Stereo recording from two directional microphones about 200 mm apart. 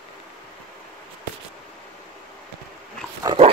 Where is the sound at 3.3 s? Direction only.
20° right (ahead or behind).